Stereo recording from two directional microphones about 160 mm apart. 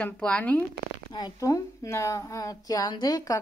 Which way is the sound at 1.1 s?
25° left (ahead or behind).